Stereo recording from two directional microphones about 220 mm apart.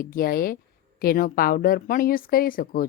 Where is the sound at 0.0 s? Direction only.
40° left (ahead or behind).